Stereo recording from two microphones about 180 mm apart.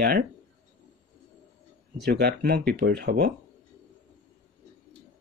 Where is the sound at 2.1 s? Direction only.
60° right (ahead or behind).